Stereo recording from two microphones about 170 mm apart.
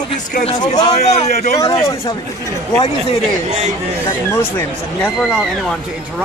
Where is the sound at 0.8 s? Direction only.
40° left (ahead or behind).